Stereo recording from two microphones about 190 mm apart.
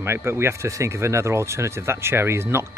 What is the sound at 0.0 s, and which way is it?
Speech, 10° right (ahead or behind).